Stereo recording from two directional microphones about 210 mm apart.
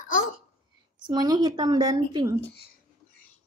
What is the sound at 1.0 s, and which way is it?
Speech, 20° right (ahead or behind).